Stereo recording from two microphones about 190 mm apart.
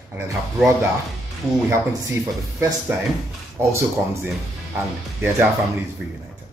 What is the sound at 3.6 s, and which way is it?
Speech, 15° right (ahead or behind).